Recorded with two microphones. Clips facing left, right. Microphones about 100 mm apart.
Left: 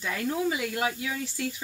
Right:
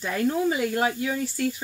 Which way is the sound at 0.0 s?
40° right (ahead or behind).